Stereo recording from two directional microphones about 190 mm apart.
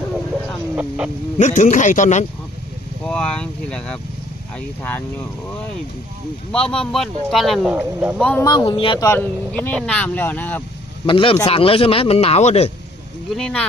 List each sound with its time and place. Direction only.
0.7 s speech: 5° right (ahead or behind)
1.4 s speech: 40° left (ahead or behind)
3.1 s speech: 5° left (ahead or behind)
6.5 s speech: 5° left (ahead or behind)
8.2 s speech: 5° left (ahead or behind)
8.5 s speech: 25° left (ahead or behind)
9.1 s speech: 10° left (ahead or behind)
11.1 s speech: 25° left (ahead or behind)
13.4 s speech: 5° left (ahead or behind)